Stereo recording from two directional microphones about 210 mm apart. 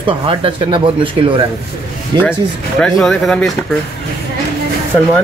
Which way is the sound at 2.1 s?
20° right (ahead or behind).